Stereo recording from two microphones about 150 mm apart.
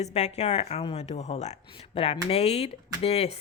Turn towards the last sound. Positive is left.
turn(degrees=45)  # may be behind; listen again after turning